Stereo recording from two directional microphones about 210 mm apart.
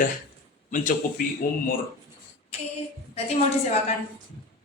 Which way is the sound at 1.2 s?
40° left (ahead or behind).